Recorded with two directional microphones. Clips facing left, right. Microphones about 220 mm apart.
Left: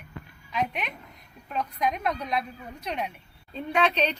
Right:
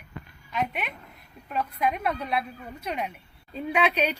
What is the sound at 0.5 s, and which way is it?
A woman's voice, 5° right (ahead or behind).